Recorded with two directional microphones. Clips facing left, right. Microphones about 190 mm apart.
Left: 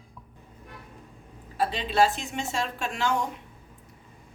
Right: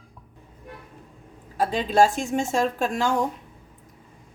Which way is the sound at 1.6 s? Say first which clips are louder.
Right 4 dB; 45° right (ahead or behind).